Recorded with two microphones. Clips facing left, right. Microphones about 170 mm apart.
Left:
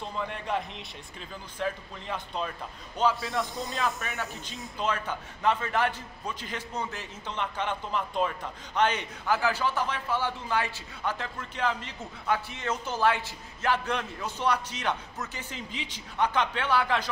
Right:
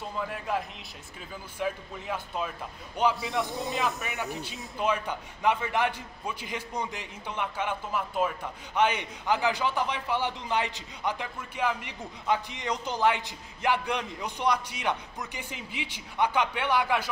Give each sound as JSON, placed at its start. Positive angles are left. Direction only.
{"t": 0.3, "sound": "a man's voice", "side_deg": 0}